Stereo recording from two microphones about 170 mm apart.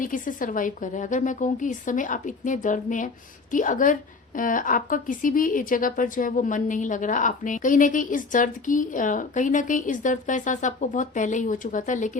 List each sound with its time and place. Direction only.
0.0 s a woman's voice: 50° left (ahead or behind)